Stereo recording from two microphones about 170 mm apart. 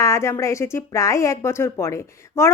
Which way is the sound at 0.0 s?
15° left (ahead or behind).